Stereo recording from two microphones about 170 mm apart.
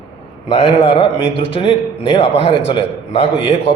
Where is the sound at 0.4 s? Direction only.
35° left (ahead or behind).